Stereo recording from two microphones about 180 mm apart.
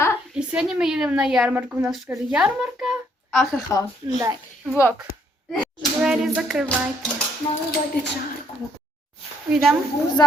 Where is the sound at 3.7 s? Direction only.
15° left (ahead or behind).